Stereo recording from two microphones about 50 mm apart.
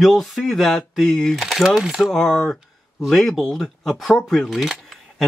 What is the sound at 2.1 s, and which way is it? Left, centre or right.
Speech, centre.